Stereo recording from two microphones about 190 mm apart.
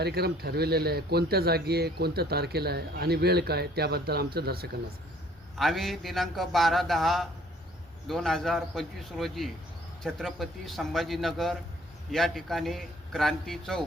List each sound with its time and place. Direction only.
0.0 s speech: 55° right (ahead or behind)
5.5 s a man's voice: centre (ahead or behind)